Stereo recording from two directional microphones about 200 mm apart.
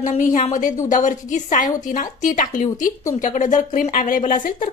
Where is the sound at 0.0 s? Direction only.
40° left (ahead or behind).